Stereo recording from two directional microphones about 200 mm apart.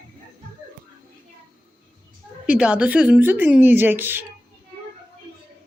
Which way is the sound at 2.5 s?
5° right (ahead or behind).